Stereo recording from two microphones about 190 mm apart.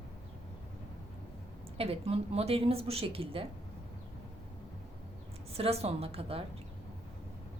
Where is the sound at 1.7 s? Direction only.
30° right (ahead or behind).